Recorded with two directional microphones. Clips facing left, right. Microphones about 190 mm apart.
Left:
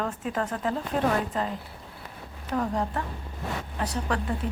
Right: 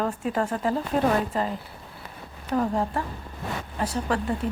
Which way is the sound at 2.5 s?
10° right (ahead or behind).